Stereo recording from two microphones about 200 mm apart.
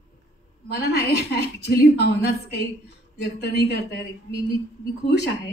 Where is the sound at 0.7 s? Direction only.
55° left (ahead or behind).